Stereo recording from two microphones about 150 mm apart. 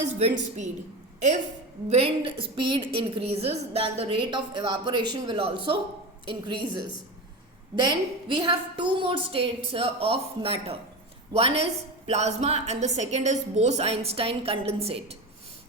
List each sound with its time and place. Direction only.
0.2 s a woman's voice: 50° right (ahead or behind)
1.9 s a woman's voice: 40° right (ahead or behind)